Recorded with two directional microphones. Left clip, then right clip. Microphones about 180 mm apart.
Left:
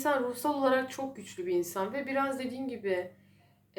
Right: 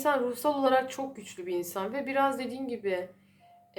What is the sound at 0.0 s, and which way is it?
A woman's voice, 25° right (ahead or behind).